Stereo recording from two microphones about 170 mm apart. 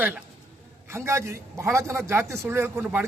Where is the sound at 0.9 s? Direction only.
15° right (ahead or behind).